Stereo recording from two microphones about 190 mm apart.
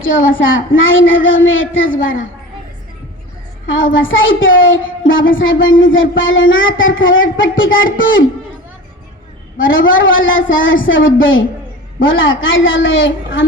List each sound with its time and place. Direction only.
0.3 s speech: 90° left
3.9 s speech: 90° left
9.6 s speech: 90° left